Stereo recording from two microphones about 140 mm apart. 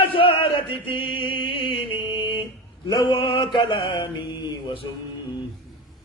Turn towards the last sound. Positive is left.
turn(degrees=35)  # may be behind; listen again after turning